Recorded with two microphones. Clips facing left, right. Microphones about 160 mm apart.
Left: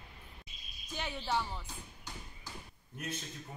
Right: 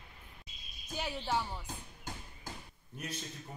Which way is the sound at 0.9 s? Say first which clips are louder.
Right 1 dB; 10° right (ahead or behind).